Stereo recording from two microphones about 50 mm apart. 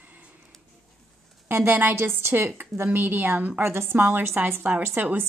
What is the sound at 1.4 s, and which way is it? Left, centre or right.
A woman's voice, right.